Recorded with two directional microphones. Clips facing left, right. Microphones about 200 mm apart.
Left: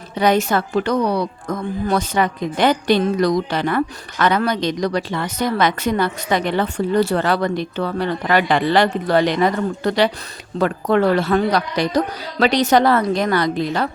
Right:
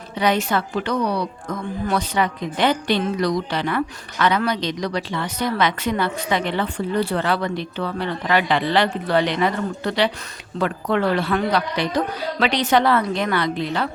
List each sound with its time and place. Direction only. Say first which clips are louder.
0.2 s a woman's voice: left 4 dB; 45° left (ahead or behind)